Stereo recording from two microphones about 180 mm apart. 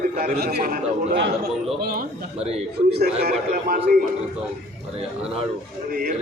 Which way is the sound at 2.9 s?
60° right (ahead or behind).